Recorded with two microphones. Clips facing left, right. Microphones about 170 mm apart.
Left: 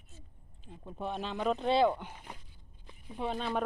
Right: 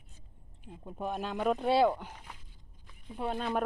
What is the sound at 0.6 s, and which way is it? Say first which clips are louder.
Speech: right 1 dB; 10° right (ahead or behind).